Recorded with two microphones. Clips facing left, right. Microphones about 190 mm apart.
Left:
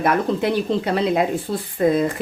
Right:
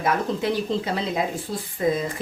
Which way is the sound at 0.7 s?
60° left (ahead or behind).